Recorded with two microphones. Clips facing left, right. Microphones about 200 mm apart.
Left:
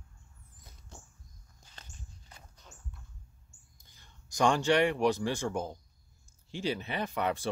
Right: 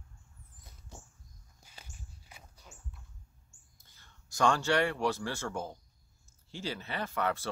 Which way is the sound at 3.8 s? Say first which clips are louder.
Left 2 dB; 15° left (ahead or behind).